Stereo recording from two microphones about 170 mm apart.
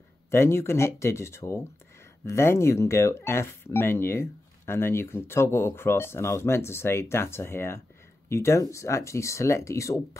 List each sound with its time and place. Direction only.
0.3 s speech: 15° left (ahead or behind)